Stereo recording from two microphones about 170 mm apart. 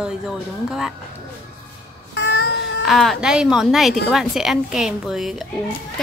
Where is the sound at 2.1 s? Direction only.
85° left.